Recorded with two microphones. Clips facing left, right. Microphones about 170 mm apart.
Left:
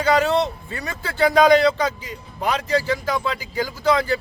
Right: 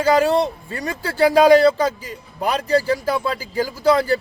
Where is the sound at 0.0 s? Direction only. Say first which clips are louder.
Right 2 dB; 35° right (ahead or behind).